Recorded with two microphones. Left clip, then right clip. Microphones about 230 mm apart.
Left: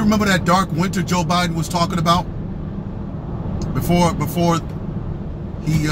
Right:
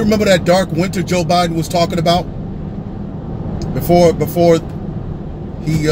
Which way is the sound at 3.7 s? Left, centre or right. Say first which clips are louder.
Right 8 dB; left.